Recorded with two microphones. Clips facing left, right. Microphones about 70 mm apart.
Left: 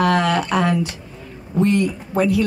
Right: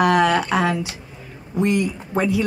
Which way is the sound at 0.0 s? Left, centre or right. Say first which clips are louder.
Right 1 dB; centre.